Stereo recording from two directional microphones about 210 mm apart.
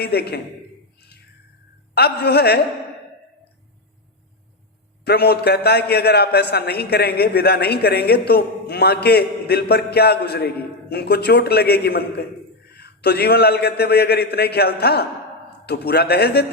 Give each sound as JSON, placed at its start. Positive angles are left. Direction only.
{"t": 0.0, "sound": "a man's voice", "side_deg": 50}
{"t": 0.9, "sound": "a sound", "side_deg": 50}
{"t": 2.0, "sound": "a man's voice", "side_deg": 50}
{"t": 5.0, "sound": "a man's voice", "side_deg": 50}